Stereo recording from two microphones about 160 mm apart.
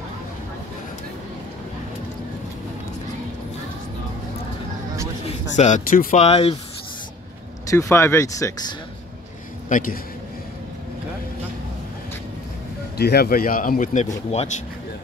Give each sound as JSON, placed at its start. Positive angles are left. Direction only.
{"t": 5.2, "sound": "a sound", "side_deg": 40}
{"t": 5.9, "sound": "speech", "side_deg": 60}
{"t": 6.2, "sound": "speech", "side_deg": 40}
{"t": 7.7, "sound": "speech", "side_deg": 15}
{"t": 9.7, "sound": "a man's voice", "side_deg": 60}
{"t": 12.9, "sound": "speech", "side_deg": 85}